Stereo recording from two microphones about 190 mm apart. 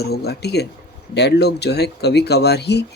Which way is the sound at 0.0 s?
55° left (ahead or behind).